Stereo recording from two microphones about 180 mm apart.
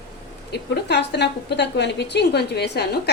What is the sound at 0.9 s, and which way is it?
A woman's voice, 70° left (ahead or behind).